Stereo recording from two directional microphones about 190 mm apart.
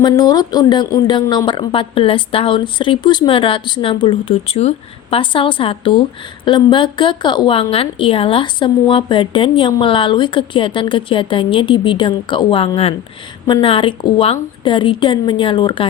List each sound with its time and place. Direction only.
0.0 s a woman's voice: 20° left (ahead or behind)